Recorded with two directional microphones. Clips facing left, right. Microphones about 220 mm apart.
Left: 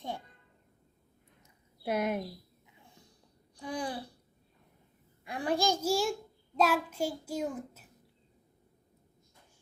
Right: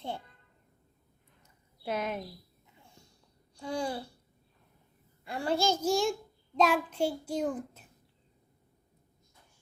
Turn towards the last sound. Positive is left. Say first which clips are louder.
# right 3 dB
turn(degrees=5)  # may be behind; listen again after turning